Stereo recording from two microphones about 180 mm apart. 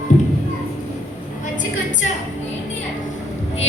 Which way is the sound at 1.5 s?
45° left (ahead or behind).